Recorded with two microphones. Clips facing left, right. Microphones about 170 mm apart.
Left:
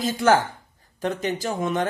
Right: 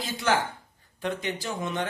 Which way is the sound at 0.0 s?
45° left (ahead or behind).